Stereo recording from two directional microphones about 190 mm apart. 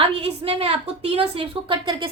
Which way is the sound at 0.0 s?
30° right (ahead or behind).